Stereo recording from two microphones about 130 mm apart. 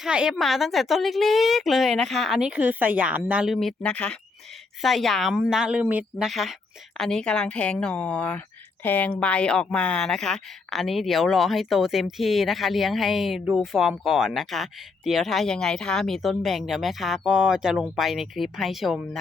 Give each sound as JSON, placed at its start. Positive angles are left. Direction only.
{"t": 0.0, "sound": "a woman's voice", "side_deg": -5}